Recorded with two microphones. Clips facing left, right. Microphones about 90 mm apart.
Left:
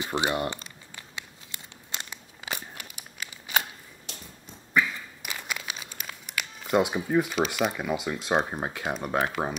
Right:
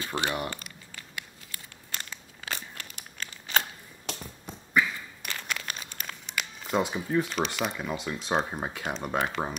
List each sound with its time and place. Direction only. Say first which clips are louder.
0.0 s crumpling: left 3 dB; 20° left (ahead or behind)
4.1 s a sound: right 8 dB; 60° right (ahead or behind)
4.7 s crumpling: left 1 dB; 10° left (ahead or behind)
7.2 s speech: left 3 dB; 5° left (ahead or behind)